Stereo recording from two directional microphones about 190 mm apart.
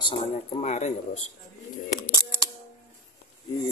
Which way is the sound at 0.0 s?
35° left (ahead or behind).